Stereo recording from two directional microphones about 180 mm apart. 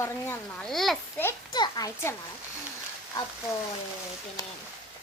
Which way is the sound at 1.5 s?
20° left (ahead or behind).